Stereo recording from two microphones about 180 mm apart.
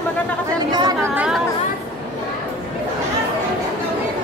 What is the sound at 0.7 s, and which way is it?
Chatter, 25° right (ahead or behind).